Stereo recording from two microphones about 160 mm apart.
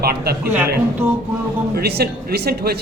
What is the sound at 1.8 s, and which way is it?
Speech, 90° right.